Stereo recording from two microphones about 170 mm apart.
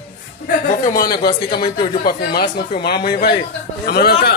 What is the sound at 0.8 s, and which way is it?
Speech, 60° left (ahead or behind).